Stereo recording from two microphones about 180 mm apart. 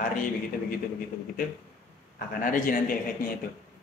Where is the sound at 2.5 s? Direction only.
50° left (ahead or behind).